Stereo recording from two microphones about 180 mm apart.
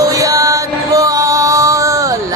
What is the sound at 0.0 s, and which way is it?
Music, 20° right (ahead or behind).